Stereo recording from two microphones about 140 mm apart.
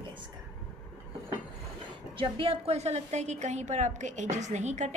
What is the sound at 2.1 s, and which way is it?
A woman's voice, 40° right (ahead or behind).